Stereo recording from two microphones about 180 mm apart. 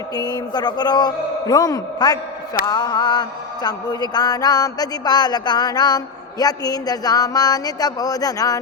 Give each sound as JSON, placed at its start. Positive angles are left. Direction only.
{"t": 0.2, "sound": "mantra", "side_deg": 20}